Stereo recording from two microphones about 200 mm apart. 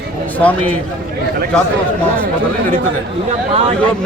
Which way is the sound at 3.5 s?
30° right (ahead or behind).